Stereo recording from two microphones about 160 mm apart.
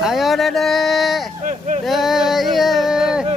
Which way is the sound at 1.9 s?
Centre (ahead or behind).